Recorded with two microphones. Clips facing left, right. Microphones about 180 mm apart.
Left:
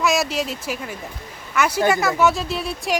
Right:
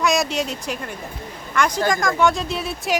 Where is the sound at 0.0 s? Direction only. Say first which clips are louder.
Even; centre (ahead or behind).